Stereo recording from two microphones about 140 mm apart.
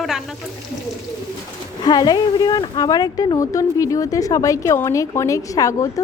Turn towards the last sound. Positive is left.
turn(degrees=25)  # may be behind; listen again after turning